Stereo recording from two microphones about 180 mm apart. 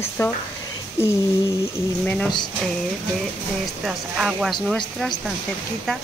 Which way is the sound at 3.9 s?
5° right (ahead or behind).